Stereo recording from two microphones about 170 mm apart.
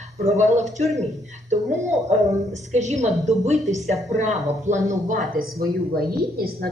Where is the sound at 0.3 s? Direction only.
40° right (ahead or behind).